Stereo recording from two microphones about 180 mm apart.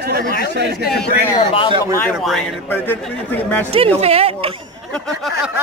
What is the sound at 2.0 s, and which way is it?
A man's voice, 5° left (ahead or behind).